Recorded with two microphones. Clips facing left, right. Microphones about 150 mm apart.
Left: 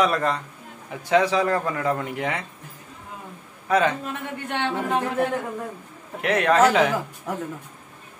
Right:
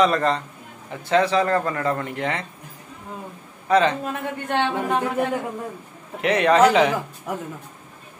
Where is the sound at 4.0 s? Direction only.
45° right (ahead or behind).